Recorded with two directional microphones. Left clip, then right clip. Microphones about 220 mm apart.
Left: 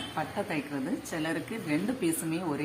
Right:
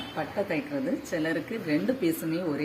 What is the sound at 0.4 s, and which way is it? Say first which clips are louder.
Speech: right 4 dB; 10° left (ahead or behind).